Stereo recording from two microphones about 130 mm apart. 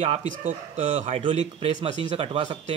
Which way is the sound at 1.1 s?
45° right (ahead or behind).